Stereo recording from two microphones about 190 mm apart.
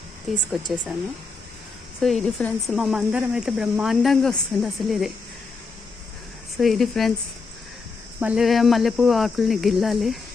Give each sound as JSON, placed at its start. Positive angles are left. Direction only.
{"t": 0.3, "sound": "speech", "side_deg": 0}
{"t": 2.0, "sound": "speech", "side_deg": 0}
{"t": 6.6, "sound": "speech", "side_deg": 0}
{"t": 8.2, "sound": "speech", "side_deg": -5}